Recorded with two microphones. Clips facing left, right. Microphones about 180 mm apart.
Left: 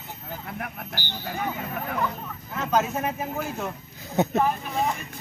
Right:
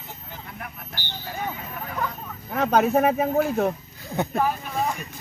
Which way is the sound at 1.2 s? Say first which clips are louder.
Left 1 dB; 55° left (ahead or behind).